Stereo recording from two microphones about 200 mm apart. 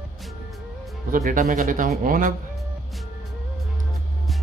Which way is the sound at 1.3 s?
40° right (ahead or behind).